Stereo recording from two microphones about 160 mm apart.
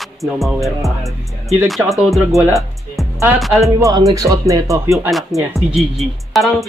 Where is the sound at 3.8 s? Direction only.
20° right (ahead or behind).